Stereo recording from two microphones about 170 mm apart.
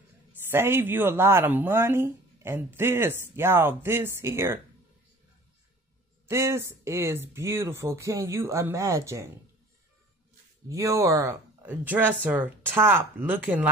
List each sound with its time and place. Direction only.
0.5 s speech: 15° right (ahead or behind)
6.2 s speech: 15° right (ahead or behind)
10.7 s speech: 20° right (ahead or behind)